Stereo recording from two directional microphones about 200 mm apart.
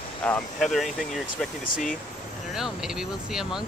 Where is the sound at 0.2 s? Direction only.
5° left (ahead or behind).